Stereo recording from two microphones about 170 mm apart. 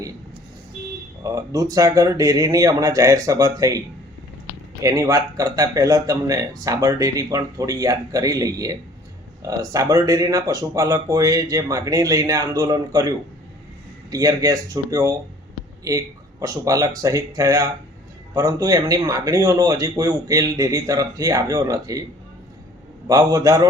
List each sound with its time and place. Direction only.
1.2 s speech: 20° right (ahead or behind)
4.8 s speech: 20° right (ahead or behind)
23.0 s speech: 20° right (ahead or behind)